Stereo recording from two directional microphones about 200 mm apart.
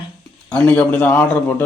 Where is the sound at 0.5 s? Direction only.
5° left (ahead or behind).